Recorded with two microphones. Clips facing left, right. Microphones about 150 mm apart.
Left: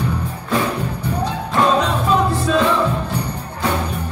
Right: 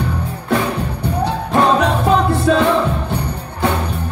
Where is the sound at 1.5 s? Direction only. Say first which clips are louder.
Right 2 dB; 60° right (ahead or behind).